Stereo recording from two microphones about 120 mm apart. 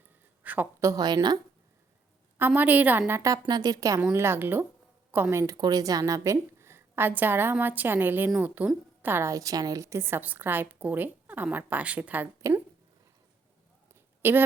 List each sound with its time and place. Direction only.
0.4 s a sound: 15° right (ahead or behind)
0.8 s a woman's voice: 30° right (ahead or behind)
2.4 s a woman's voice: 15° right (ahead or behind)
3.1 s a woman's voice: 25° right (ahead or behind)
5.5 s a woman's voice: 35° right (ahead or behind); by 12.3 s 15° right (ahead or behind)
14.2 s speech: 20° right (ahead or behind)